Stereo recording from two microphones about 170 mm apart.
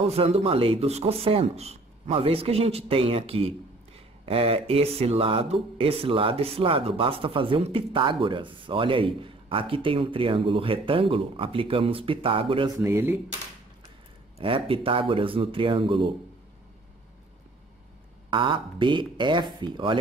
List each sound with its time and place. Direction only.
0.0 s speech: 35° right (ahead or behind)
12.7 s speech: 15° right (ahead or behind)
14.4 s speech: 30° right (ahead or behind)
18.3 s speech: 30° right (ahead or behind)